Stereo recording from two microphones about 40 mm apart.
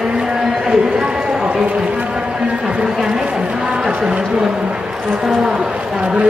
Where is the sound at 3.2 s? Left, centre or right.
Right.